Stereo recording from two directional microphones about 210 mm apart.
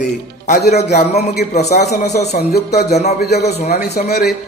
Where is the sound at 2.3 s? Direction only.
50° left (ahead or behind).